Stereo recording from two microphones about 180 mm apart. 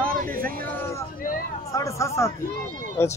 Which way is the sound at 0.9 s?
50° left (ahead or behind).